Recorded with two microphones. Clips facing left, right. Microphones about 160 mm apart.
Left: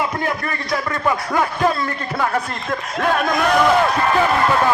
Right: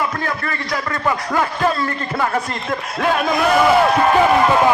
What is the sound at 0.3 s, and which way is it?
Speech, 20° left (ahead or behind).